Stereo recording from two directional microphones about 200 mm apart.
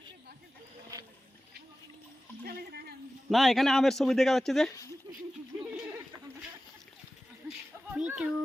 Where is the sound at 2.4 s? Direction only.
50° right (ahead or behind).